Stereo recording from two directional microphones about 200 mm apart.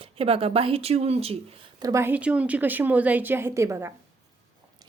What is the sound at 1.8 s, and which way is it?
A woman's voice, 15° right (ahead or behind).